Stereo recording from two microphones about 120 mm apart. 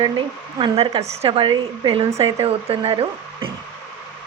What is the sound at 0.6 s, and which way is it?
A woman's voice, 50° right (ahead or behind).